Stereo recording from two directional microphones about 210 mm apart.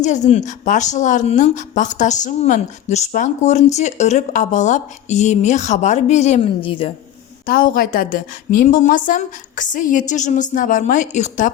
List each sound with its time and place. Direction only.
0.0 s a woman's voice: 35° left (ahead or behind)
7.4 s a woman's voice: 40° left (ahead or behind)